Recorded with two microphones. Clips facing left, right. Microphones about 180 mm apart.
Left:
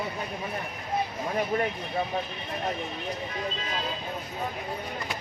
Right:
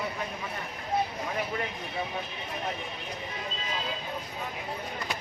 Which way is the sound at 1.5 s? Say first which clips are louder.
Left 6 dB; 40° left (ahead or behind).